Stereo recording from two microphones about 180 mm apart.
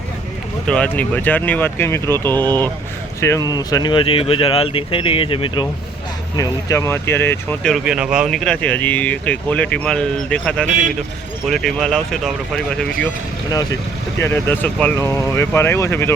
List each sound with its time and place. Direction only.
0.7 s speech: 5° left (ahead or behind); by 5.6 s 30° left (ahead or behind)
6.3 s speech: 20° left (ahead or behind)
7.7 s speech: 5° right (ahead or behind)
14.2 s speech: 15° left (ahead or behind)